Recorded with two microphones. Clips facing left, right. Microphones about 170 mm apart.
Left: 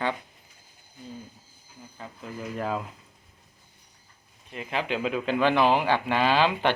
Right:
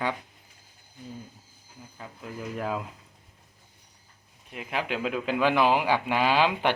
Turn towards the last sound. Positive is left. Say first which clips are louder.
# left 1 dB
turn(degrees=-10)  # may be behind; listen again after turning